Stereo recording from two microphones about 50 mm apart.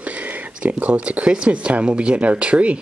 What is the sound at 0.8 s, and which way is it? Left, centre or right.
Speech, right.